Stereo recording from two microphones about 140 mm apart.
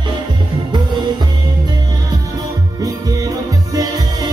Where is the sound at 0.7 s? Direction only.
30° right (ahead or behind).